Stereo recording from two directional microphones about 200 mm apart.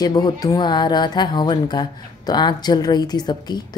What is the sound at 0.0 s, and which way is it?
Speech, 20° left (ahead or behind).